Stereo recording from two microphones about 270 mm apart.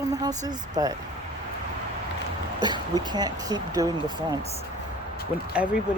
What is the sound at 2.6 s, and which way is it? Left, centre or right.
Speech, centre.